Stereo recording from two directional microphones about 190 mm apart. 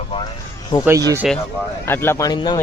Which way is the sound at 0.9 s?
15° right (ahead or behind).